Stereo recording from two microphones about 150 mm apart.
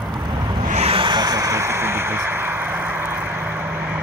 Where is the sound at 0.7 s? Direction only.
45° right (ahead or behind); by 2.5 s 15° right (ahead or behind).